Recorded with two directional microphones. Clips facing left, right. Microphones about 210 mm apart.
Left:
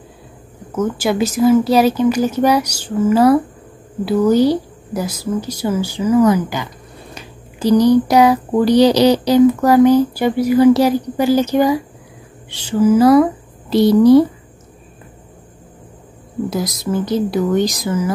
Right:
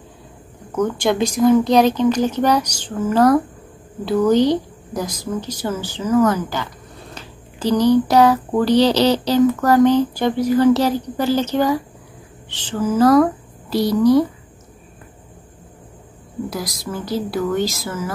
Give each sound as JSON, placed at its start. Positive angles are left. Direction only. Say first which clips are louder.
{"t": 0.7, "sound": "speech", "louder": "left 1 dB", "side_deg": 5}
{"t": 13.7, "sound": "speech", "louder": "left 5 dB", "side_deg": 25}
{"t": 16.4, "sound": "speech", "louder": "left 8 dB", "side_deg": 25}